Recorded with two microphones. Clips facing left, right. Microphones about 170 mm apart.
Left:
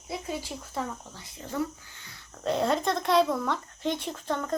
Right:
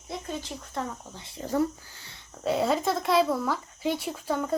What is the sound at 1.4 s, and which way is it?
Speech, 35° right (ahead or behind).